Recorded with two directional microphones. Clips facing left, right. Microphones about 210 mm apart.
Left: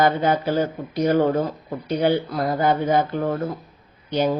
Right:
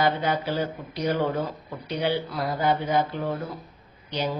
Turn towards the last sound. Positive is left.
turn(degrees=50)  # may be behind; listen again after turning